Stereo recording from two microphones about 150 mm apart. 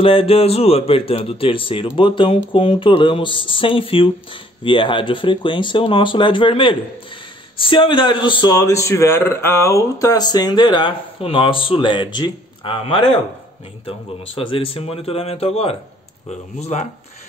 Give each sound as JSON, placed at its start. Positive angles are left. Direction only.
{"t": 0.0, "sound": "a man's voice", "side_deg": 40}